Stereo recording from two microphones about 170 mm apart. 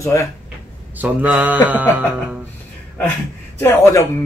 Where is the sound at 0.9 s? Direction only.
10° right (ahead or behind).